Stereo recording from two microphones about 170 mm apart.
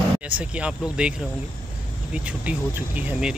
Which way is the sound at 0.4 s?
5° right (ahead or behind).